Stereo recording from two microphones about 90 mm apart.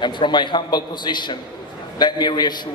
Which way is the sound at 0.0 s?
60° left (ahead or behind).